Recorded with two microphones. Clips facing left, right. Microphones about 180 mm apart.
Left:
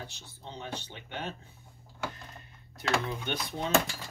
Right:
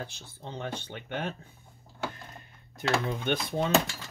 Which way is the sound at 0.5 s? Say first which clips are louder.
Right 4 dB; 55° right (ahead or behind).